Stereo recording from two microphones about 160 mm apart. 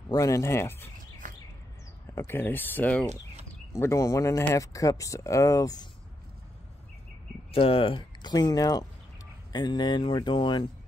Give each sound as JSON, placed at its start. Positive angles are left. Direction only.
{"t": 0.1, "sound": "speech", "side_deg": 20}
{"t": 2.1, "sound": "speech", "side_deg": 15}
{"t": 7.5, "sound": "speech", "side_deg": 35}